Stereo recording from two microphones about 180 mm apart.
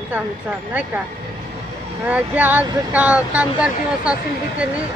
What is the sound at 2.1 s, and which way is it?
Speech, 10° right (ahead or behind).